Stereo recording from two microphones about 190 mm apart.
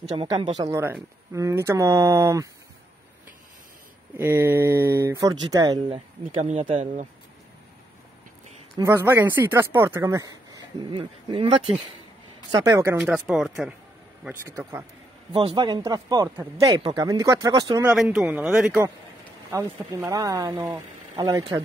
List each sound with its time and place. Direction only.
0.6 s speech: 15° right (ahead or behind)
4.2 s speech: 10° right (ahead or behind); by 7.1 s 35° right (ahead or behind)
8.7 s speech: 15° right (ahead or behind)
13.0 s speech: 5° right (ahead or behind)
15.3 s speech: 25° right (ahead or behind)
17.9 s speech: 5° right (ahead or behind)
19.5 s speech: 15° right (ahead or behind)